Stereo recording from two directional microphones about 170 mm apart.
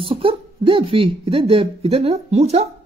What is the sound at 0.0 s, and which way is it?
Speech, 35° right (ahead or behind).